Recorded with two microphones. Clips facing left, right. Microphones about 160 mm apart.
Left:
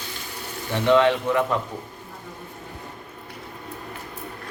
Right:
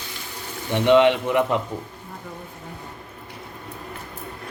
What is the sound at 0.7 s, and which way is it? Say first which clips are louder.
Speech: right 2 dB; 20° right (ahead or behind).